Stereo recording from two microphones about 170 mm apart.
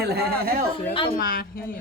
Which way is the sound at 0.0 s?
70° right (ahead or behind).